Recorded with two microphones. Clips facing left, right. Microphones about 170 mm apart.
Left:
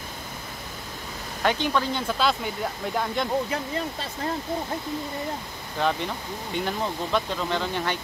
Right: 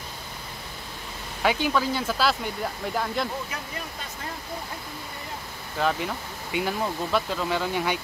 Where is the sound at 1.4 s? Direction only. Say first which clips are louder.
Even; 5° right (ahead or behind).